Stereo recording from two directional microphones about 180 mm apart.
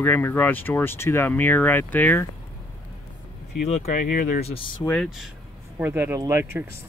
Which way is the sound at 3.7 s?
40° left (ahead or behind).